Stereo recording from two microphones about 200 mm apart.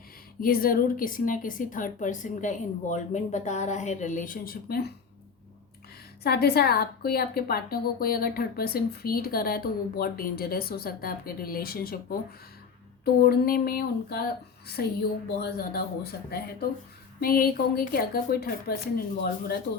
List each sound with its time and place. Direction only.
0.3 s a woman's voice: 45° left (ahead or behind)
6.2 s a woman's voice: 50° left (ahead or behind)
13.2 s a woman's voice: 50° left (ahead or behind)
15.4 s a woman's voice: 50° left (ahead or behind)